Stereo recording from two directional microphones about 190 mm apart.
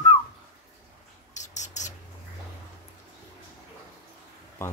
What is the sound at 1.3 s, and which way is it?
Mouse, 40° left (ahead or behind).